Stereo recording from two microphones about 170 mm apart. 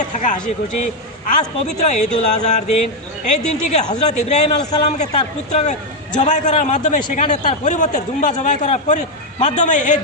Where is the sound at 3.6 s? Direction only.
45° left (ahead or behind).